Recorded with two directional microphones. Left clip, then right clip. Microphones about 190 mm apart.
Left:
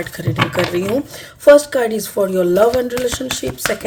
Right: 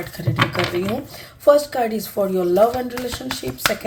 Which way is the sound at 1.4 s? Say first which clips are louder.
Left 5 dB; 45° left (ahead or behind).